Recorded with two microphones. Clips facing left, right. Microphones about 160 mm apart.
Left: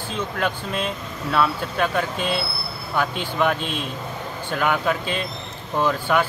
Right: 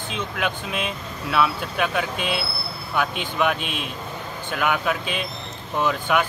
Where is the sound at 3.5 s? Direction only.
60° right (ahead or behind).